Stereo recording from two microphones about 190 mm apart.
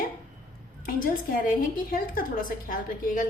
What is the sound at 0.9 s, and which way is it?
A woman's voice, 45° left (ahead or behind).